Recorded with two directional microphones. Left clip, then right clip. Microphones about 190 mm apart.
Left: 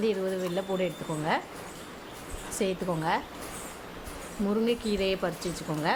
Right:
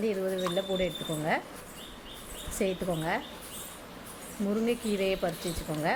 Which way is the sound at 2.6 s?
5° right (ahead or behind).